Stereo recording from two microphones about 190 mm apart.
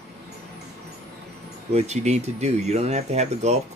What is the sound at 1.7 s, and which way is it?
Speech, 35° right (ahead or behind).